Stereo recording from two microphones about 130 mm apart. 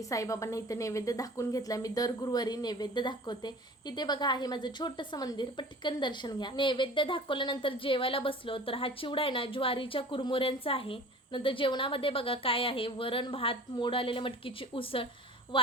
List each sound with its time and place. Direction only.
0.0 s speech: 25° left (ahead or behind); by 15.0 s 45° left (ahead or behind)